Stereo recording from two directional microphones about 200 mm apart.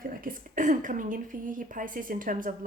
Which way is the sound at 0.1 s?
45° right (ahead or behind).